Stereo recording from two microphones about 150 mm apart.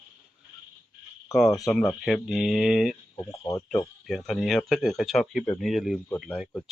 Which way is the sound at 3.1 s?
20° left (ahead or behind).